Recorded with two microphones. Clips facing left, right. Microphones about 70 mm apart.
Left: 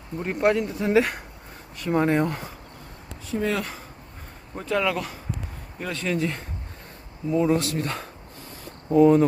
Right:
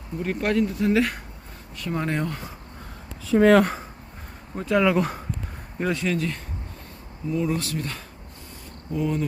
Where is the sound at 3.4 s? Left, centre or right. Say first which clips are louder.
Right 10 dB; right.